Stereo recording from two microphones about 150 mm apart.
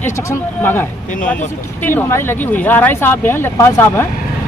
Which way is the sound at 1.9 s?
15° left (ahead or behind).